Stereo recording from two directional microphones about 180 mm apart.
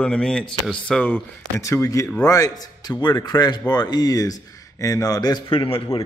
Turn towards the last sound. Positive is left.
turn(degrees=30)  # may be behind; listen again after turning